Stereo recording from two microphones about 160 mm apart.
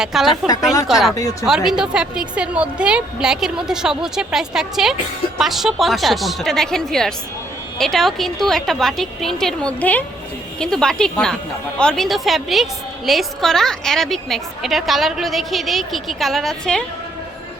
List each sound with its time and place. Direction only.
0.0 s a woman's voice: centre (ahead or behind)
1.1 s speech: 20° left (ahead or behind)
1.5 s a woman's voice: 5° right (ahead or behind)